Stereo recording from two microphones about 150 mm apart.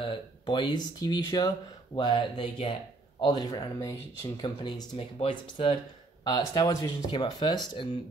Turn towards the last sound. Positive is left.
turn(degrees=30)  # may be behind; listen again after turning